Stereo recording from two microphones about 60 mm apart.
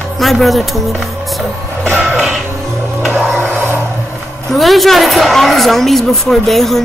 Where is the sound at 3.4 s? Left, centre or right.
Centre.